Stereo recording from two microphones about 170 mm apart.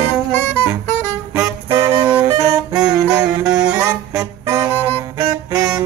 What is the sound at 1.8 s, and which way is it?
Music, 15° right (ahead or behind).